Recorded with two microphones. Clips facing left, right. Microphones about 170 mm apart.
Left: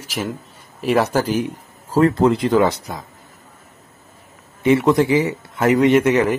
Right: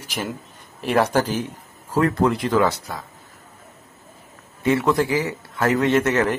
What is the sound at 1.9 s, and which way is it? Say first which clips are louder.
Speech: left 4 dB; 30° left (ahead or behind).